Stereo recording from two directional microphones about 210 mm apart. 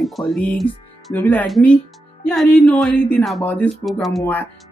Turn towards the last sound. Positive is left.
turn(degrees=10)  # may be behind; listen again after turning